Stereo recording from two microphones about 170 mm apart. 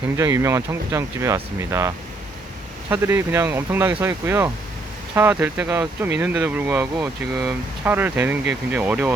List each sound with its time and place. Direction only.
0.2 s speech: 15° right (ahead or behind)
2.9 s speech: 15° right (ahead or behind)